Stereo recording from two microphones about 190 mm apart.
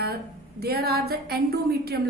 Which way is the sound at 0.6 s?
55° right (ahead or behind).